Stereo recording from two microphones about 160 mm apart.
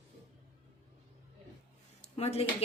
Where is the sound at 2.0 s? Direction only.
40° left (ahead or behind).